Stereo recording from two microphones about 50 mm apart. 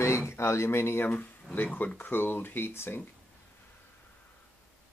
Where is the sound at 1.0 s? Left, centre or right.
Left.